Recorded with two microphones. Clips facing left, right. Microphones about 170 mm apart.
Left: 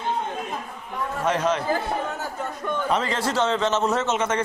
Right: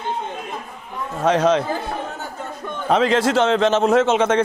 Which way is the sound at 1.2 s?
90° right.